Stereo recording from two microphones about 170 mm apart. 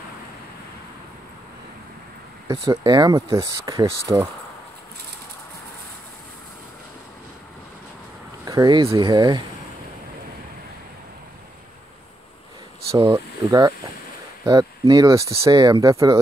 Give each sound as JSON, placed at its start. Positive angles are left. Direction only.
{"t": 2.4, "sound": "speech", "side_deg": -25}
{"t": 8.5, "sound": "speech", "side_deg": -20}
{"t": 13.1, "sound": "speech", "side_deg": -20}